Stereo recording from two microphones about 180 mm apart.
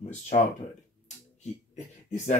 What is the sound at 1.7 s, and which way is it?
Speech, 40° left (ahead or behind).